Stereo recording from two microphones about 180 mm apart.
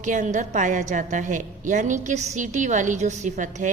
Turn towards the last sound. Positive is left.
turn(degrees=-40)  # may be behind; listen again after turning